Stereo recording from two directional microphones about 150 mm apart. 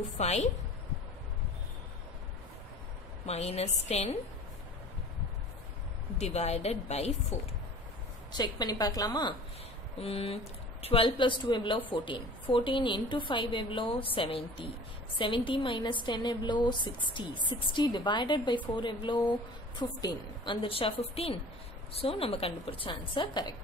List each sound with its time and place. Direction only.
0.2 s speech: 45° left (ahead or behind)
3.3 s speech: 45° left (ahead or behind)
6.1 s speech: 45° left (ahead or behind)
8.3 s a woman's voice: 30° left (ahead or behind)
9.9 s speech: 40° left (ahead or behind)